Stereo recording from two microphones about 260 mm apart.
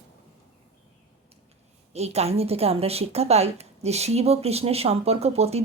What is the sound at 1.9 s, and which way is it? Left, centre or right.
A woman's voice, right.